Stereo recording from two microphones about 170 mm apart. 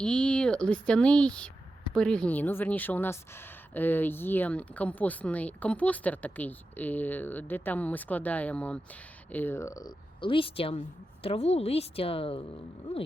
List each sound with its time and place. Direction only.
0.0 s a woman's voice: 5° left (ahead or behind); by 12.4 s 35° left (ahead or behind)